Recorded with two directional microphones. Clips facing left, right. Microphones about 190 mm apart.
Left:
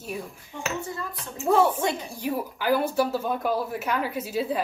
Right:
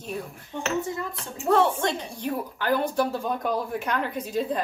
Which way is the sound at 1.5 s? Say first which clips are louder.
Even; 10° left (ahead or behind).